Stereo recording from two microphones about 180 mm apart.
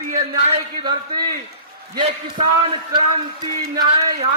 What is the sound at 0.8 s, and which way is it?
Speech, 25° right (ahead or behind).